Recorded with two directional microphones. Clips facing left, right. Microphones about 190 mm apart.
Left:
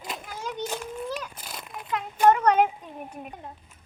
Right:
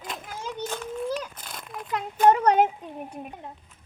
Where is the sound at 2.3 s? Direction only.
35° right (ahead or behind).